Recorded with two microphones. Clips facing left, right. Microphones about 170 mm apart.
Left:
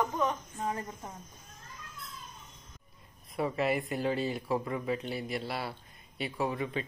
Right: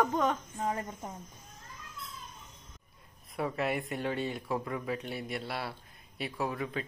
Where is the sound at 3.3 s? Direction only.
Centre (ahead or behind).